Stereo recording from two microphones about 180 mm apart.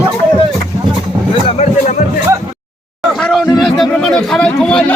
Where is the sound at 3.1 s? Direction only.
5° left (ahead or behind).